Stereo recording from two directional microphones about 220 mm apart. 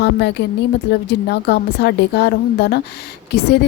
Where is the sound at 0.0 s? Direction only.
50° left (ahead or behind).